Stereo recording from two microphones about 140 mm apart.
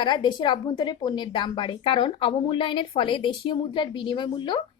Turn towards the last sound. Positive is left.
turn(degrees=35)  # may be behind; listen again after turning